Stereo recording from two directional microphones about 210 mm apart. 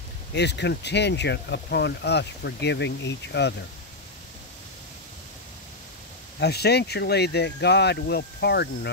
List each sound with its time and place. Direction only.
0.3 s speech: 55° left (ahead or behind)
6.4 s speech: 50° left (ahead or behind)